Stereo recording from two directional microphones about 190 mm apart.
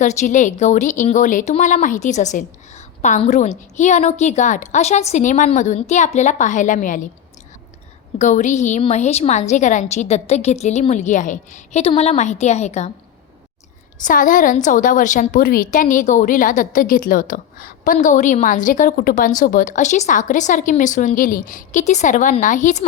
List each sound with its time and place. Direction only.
0.0 s a woman's voice: 40° left (ahead or behind)
8.2 s a woman's voice: 40° left (ahead or behind)
14.0 s a woman's voice: 45° left (ahead or behind)